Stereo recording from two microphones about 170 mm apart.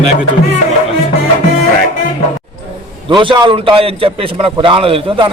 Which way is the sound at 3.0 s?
30° right (ahead or behind).